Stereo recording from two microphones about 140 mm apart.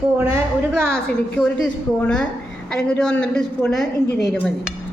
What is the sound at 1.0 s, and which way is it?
A woman's voice, 5° left (ahead or behind).